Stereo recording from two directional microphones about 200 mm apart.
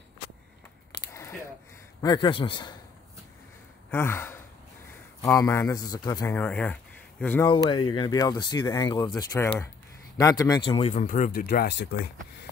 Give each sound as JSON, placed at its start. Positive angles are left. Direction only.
{"t": 1.0, "sound": "a sound", "side_deg": 15}
{"t": 2.0, "sound": "speech", "side_deg": 20}
{"t": 3.9, "sound": "speech", "side_deg": 10}
{"t": 6.3, "sound": "speech", "side_deg": 5}
{"t": 7.4, "sound": "speech", "side_deg": 20}